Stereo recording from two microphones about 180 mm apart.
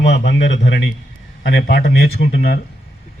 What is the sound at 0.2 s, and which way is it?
Speech, 75° left (ahead or behind).